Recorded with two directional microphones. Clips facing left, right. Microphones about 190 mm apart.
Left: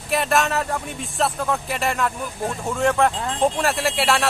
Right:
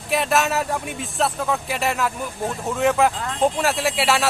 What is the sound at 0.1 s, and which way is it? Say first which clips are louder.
Speech: even; centre (ahead or behind).